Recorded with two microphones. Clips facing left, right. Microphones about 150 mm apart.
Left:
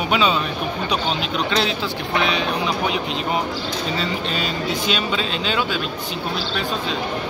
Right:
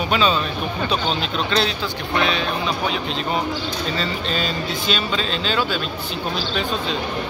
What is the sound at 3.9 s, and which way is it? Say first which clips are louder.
Speech: even; 10° left (ahead or behind).